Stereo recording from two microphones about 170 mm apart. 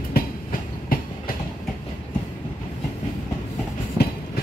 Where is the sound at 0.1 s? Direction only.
60° left (ahead or behind).